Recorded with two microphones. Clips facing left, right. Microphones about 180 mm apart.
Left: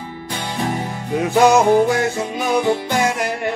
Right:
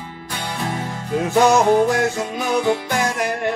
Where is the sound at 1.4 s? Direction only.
15° left (ahead or behind).